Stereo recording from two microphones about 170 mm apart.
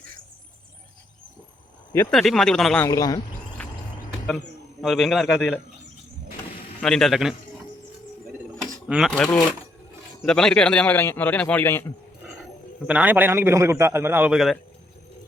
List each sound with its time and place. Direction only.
2.0 s a man's voice: centre (ahead or behind)
2.8 s speech: 20° left (ahead or behind)
3.6 s cricket: 10° left (ahead or behind)
4.8 s a man's voice: centre (ahead or behind)
6.8 s a man's voice: centre (ahead or behind)
8.9 s a man's voice: centre (ahead or behind)
12.9 s a man's voice: 10° right (ahead or behind)